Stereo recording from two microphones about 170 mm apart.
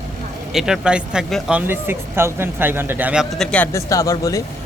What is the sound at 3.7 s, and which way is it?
Speech, 20° left (ahead or behind).